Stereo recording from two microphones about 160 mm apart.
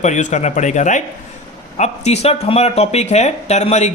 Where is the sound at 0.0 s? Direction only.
50° left (ahead or behind).